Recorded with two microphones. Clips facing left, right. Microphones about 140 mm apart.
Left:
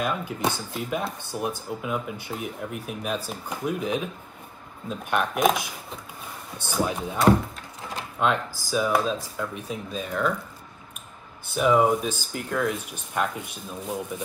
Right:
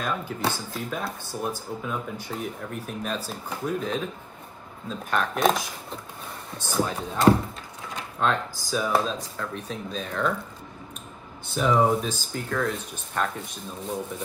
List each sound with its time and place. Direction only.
0.0 s speech: 15° left (ahead or behind)
11.5 s speech: 10° left (ahead or behind)